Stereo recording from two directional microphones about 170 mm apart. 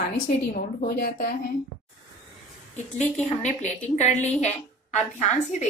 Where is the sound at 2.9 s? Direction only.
40° left (ahead or behind).